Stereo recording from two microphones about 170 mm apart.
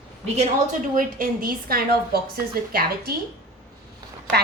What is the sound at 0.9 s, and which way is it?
A woman's voice, 55° right (ahead or behind).